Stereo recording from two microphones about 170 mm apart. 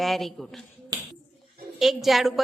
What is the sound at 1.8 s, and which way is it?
Speech, centre (ahead or behind).